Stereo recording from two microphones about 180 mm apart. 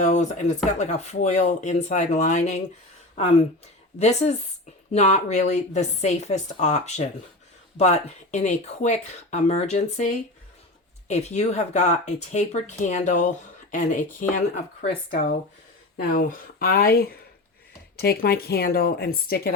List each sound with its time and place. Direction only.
0.0 s speech: 40° left (ahead or behind)
3.9 s speech: 40° left (ahead or behind)
11.1 s speech: 40° left (ahead or behind); by 19.4 s 60° left (ahead or behind)